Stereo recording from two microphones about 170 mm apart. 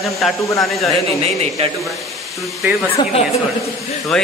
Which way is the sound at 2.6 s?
10° right (ahead or behind).